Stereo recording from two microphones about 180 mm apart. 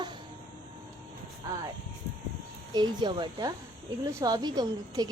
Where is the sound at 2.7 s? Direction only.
25° right (ahead or behind).